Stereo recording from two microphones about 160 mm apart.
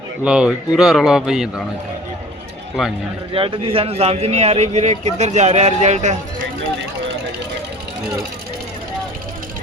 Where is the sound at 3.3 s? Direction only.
35° right (ahead or behind).